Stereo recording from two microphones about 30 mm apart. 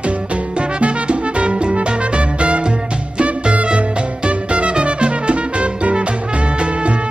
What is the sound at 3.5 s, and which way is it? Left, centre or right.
Music, right.